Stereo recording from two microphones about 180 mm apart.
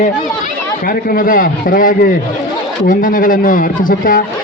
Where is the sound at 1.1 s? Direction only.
50° left (ahead or behind).